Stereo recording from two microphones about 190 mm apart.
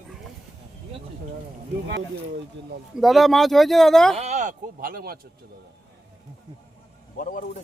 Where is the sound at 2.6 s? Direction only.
65° right (ahead or behind).